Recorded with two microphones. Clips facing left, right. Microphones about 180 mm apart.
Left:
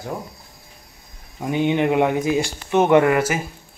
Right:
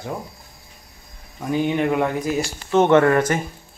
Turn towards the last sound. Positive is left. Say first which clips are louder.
# even
turn(degrees=10)  # may be behind; listen again after turning